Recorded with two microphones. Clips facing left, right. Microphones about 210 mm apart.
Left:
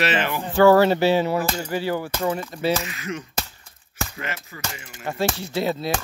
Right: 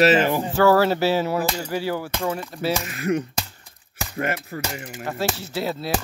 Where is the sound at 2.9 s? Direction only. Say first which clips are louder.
Right 8 dB; 55° right (ahead or behind).